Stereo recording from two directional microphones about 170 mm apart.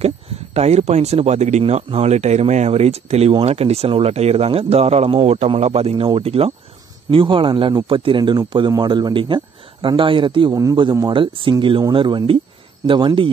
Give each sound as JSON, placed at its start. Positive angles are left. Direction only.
{"t": 0.6, "sound": "a man's voice", "side_deg": -40}